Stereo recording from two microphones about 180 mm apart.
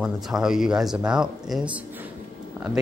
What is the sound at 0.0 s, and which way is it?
Speech, centre (ahead or behind).